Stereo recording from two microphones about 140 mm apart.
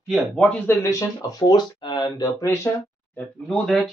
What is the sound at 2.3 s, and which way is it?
Speech, 20° left (ahead or behind).